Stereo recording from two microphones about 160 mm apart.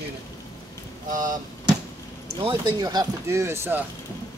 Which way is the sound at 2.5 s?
25° right (ahead or behind).